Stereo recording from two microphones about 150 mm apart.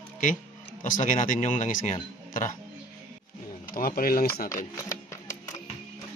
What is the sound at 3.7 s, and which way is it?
Speech, 75° left (ahead or behind).